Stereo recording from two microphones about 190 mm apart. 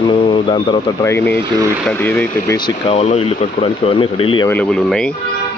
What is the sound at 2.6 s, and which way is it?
Speech, 30° left (ahead or behind).